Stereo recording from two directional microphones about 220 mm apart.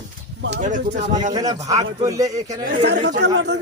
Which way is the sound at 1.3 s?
15° right (ahead or behind).